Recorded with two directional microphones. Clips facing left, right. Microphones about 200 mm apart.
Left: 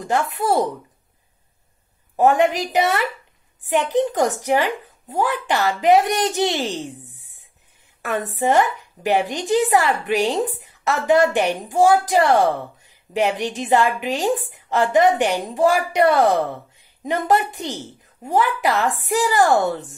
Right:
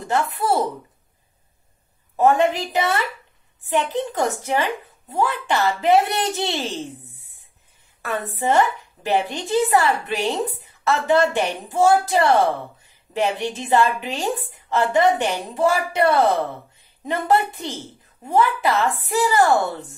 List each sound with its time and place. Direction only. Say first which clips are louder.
0.1 s speech: left 1 dB; 20° left (ahead or behind)
2.1 s speech: left 1 dB; 15° left (ahead or behind)
8.2 s speech: left 1 dB; 15° left (ahead or behind)